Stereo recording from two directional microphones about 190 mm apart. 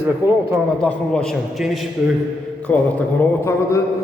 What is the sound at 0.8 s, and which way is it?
Speech, 5° left (ahead or behind).